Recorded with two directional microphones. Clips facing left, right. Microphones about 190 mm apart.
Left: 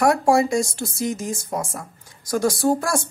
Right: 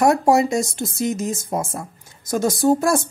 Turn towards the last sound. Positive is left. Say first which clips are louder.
# right 4 dB
turn(degrees=-20)  # may be behind; listen again after turning